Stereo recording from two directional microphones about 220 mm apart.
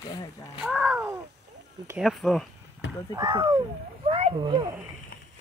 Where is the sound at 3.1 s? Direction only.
20° right (ahead or behind).